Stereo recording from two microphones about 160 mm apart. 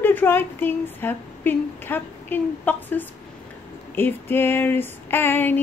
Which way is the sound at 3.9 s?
15° left (ahead or behind).